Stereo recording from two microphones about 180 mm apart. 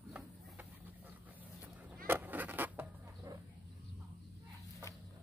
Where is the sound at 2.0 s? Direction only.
10° right (ahead or behind).